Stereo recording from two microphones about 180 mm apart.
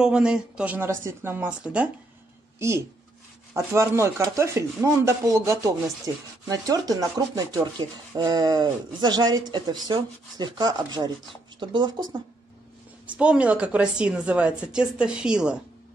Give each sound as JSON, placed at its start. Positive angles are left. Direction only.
{"t": 0.0, "sound": "a woman's voice", "side_deg": -5}
{"t": 3.5, "sound": "speech", "side_deg": -15}
{"t": 13.0, "sound": "a woman's voice", "side_deg": -5}